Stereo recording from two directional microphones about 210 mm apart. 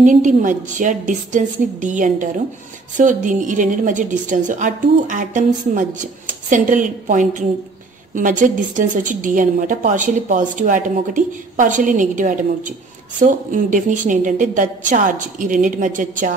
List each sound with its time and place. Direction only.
0.0 s a woman's voice: 35° right (ahead or behind)